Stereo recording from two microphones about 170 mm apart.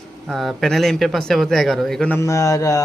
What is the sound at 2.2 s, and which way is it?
Speech, 20° left (ahead or behind).